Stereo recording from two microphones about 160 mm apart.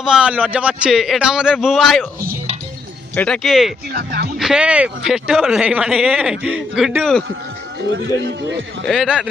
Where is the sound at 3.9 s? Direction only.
90° right.